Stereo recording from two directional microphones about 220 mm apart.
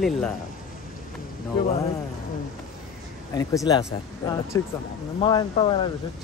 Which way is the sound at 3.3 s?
20° left (ahead or behind).